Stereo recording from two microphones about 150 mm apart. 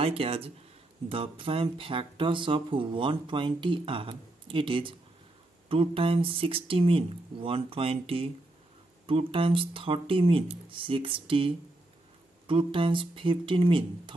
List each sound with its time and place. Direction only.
0.0 s speech: 40° right (ahead or behind)